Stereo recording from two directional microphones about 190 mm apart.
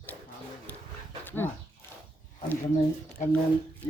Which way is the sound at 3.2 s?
40° left (ahead or behind).